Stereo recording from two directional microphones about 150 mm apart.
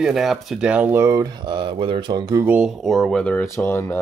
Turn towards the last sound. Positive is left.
turn(degrees=15)  # may be behind; listen again after turning